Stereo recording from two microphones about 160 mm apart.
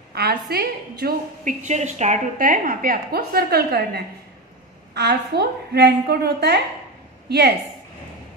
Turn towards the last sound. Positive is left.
turn(degrees=-90)